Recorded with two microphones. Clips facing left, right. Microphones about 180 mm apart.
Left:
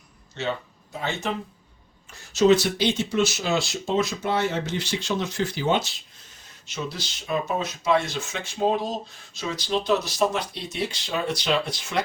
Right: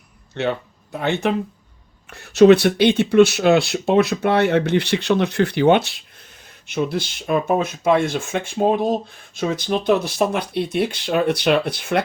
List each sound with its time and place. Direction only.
0.4 s speech: 60° right (ahead or behind)